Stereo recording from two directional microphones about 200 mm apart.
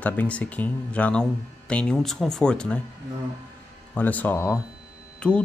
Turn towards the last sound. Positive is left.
turn(degrees=5)  # may be behind; listen again after turning